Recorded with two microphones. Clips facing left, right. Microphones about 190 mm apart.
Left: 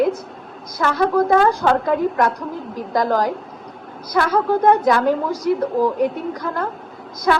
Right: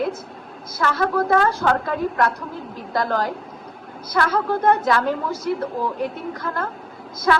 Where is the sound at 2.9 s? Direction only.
15° left (ahead or behind).